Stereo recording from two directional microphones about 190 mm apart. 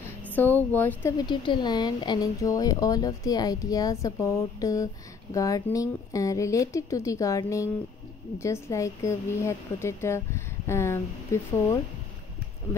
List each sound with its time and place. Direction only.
0.3 s a sound: 10° left (ahead or behind)
0.7 s speech: 10° left (ahead or behind)
1.1 s speech: 25° left (ahead or behind)